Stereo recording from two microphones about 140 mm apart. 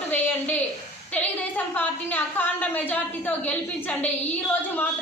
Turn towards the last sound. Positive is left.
turn(degrees=10)  # may be behind; listen again after turning